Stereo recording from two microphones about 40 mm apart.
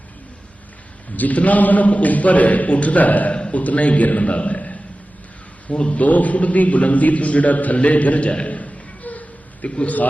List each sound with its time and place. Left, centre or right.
1.1 s a man's voice: left
6.0 s a man's voice: left
9.6 s a man's voice: left